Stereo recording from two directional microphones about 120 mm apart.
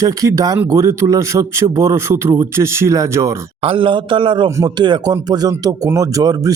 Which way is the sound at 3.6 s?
50° right (ahead or behind).